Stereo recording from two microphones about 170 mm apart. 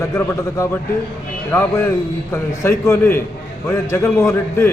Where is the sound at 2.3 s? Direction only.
15° left (ahead or behind).